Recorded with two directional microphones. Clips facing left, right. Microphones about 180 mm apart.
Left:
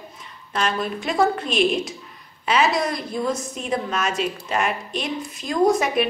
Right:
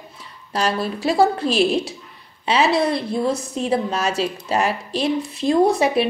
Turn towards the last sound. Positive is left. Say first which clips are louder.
# right 2 dB
turn(degrees=-30)  # may be behind; listen again after turning